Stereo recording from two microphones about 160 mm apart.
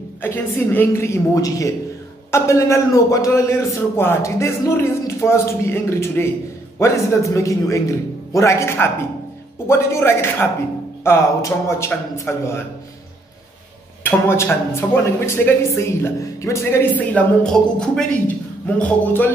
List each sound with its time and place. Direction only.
0.2 s a man's voice: 15° left (ahead or behind)
14.2 s speech: 15° left (ahead or behind)